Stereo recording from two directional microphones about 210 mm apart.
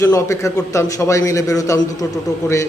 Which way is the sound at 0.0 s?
15° left (ahead or behind).